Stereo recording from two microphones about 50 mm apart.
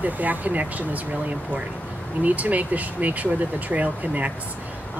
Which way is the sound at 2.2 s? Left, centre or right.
Right.